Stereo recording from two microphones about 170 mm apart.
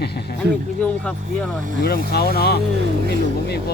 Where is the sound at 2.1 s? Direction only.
70° left (ahead or behind).